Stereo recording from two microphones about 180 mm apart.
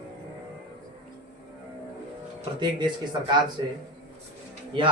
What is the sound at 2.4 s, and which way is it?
Speech, 25° right (ahead or behind).